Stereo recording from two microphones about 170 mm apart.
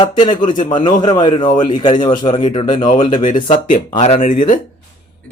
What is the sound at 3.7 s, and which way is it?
Speech, 35° left (ahead or behind).